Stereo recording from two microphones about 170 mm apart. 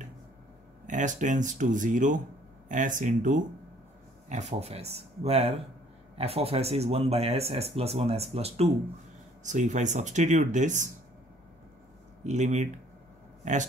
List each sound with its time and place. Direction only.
0.8 s speech: 50° right (ahead or behind)
12.2 s speech: 45° right (ahead or behind)